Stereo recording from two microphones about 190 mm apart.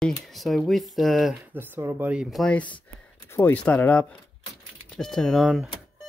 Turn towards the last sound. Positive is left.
turn(degrees=0)  # may be behind; listen again after turning